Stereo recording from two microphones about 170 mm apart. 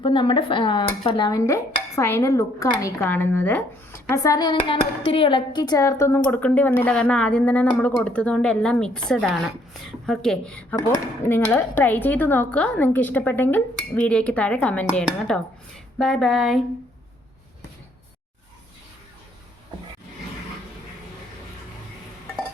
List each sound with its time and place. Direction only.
0.0 s dishes: 30° left (ahead or behind)
6.3 s a woman's voice: 10° left (ahead or behind)
10.8 s speech: 15° left (ahead or behind)
16.0 s a woman's voice: 5° left (ahead or behind)